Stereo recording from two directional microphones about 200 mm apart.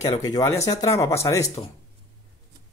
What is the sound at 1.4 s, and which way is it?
Speech, 30° left (ahead or behind).